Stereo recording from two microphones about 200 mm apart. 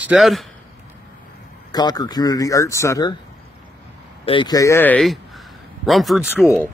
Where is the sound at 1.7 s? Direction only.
20° left (ahead or behind).